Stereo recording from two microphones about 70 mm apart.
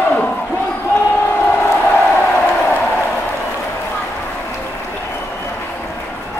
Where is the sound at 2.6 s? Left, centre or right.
Left.